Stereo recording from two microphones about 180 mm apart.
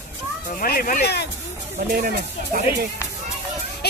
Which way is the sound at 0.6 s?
50° left (ahead or behind).